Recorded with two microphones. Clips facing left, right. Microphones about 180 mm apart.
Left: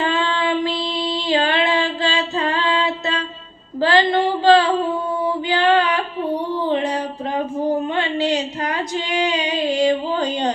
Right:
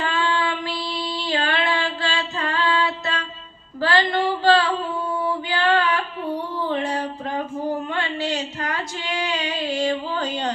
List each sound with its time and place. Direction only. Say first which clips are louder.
0.0 s female singing: left 3 dB; 25° left (ahead or behind)
3.8 s a sound: left 4 dB; 20° left (ahead or behind)
5.2 s female singing: left 5 dB; 15° left (ahead or behind)